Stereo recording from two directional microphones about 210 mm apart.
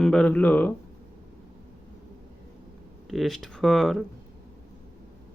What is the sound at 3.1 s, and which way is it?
Speech, centre (ahead or behind).